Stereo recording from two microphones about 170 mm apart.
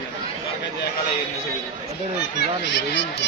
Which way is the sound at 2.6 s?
90° left.